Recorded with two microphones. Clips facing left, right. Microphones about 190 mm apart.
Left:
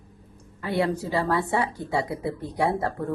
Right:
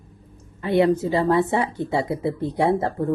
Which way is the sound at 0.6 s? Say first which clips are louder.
Right 7 dB; 20° right (ahead or behind).